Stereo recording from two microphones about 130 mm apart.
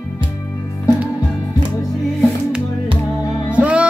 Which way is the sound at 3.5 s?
10° right (ahead or behind).